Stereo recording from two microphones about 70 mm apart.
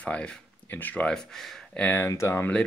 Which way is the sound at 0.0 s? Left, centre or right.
Centre.